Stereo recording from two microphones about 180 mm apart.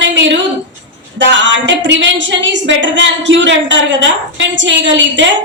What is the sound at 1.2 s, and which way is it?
A woman's voice, 90° right.